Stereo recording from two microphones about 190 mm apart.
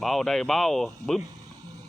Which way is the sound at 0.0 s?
Centre (ahead or behind).